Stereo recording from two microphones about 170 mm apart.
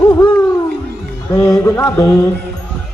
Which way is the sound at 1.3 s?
10° left (ahead or behind).